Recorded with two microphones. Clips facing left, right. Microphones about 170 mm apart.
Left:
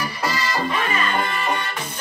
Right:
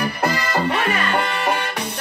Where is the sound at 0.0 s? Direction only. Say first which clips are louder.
Right 3 dB; 60° right (ahead or behind).